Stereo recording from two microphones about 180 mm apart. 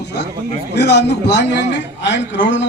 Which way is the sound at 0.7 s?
70° left (ahead or behind).